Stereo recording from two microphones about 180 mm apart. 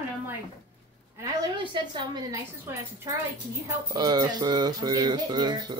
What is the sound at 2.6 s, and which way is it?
A woman's voice, 15° right (ahead or behind).